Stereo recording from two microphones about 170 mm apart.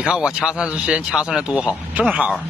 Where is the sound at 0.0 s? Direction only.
5° right (ahead or behind).